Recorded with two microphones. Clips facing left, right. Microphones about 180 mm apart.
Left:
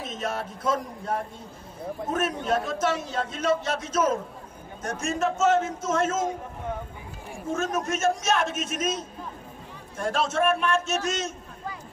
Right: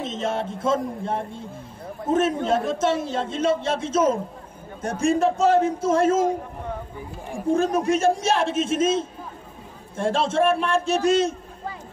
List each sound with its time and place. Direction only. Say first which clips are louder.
0.0 s a man's voice: right 5 dB; 25° right (ahead or behind)
7.5 s a man's voice: right 7 dB; 35° right (ahead or behind)